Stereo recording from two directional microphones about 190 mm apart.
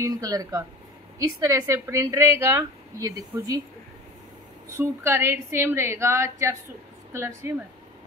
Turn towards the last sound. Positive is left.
turn(degrees=-15)  # may be behind; listen again after turning